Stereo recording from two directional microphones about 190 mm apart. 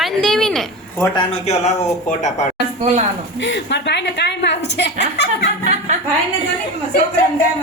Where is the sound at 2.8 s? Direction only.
35° right (ahead or behind).